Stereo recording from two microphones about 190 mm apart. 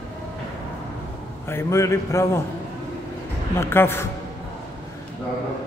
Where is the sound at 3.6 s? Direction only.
10° left (ahead or behind).